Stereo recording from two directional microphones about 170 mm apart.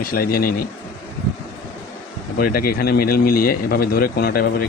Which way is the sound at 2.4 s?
60° left (ahead or behind).